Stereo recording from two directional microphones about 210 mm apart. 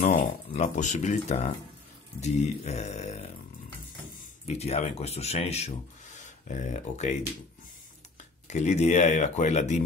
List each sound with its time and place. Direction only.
0.0 s speech: 30° left (ahead or behind)
8.5 s speech: 35° left (ahead or behind)